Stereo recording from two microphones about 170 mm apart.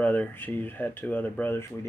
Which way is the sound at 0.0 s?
10° left (ahead or behind).